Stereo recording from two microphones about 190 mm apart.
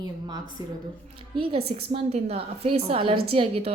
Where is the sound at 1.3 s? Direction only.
30° right (ahead or behind).